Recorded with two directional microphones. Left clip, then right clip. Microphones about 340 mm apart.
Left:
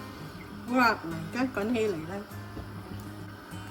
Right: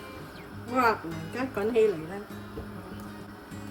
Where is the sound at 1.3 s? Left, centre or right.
Left.